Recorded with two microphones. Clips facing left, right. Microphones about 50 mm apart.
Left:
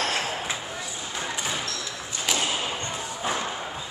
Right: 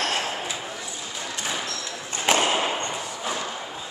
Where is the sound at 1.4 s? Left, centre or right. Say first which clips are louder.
Right 1 dB; centre.